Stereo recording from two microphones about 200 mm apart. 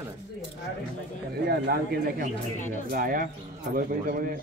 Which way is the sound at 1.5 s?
50° right (ahead or behind).